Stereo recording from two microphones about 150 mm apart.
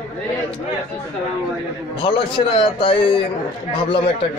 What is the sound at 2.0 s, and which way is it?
A man's voice, 35° left (ahead or behind).